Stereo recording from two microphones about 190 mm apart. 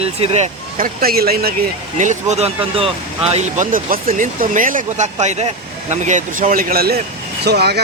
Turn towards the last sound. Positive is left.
turn(degrees=-60)  # may be behind; listen again after turning